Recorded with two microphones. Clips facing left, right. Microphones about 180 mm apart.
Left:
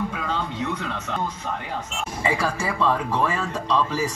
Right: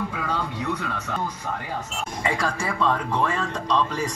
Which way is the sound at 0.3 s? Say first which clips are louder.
Even; 20° left (ahead or behind).